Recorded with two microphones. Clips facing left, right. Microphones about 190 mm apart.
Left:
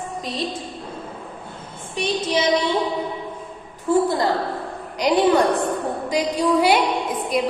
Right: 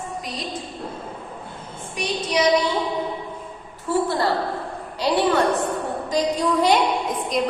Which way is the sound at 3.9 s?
15° left (ahead or behind).